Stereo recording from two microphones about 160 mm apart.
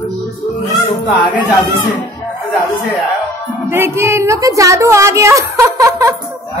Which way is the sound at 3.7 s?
15° right (ahead or behind).